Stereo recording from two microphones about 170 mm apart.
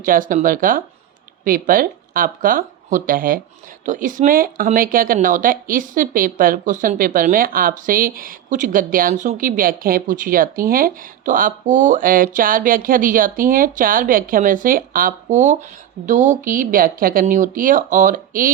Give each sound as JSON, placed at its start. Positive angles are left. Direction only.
{"t": 0.0, "sound": "speech", "side_deg": -55}